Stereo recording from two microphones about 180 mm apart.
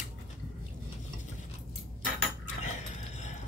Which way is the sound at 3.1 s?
40° left (ahead or behind).